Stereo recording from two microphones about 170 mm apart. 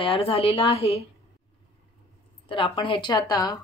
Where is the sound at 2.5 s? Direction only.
30° left (ahead or behind).